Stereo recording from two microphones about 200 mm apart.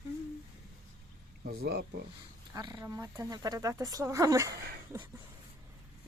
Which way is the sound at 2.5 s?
20° right (ahead or behind).